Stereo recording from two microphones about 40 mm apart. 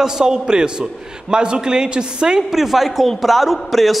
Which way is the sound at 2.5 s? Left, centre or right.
Centre.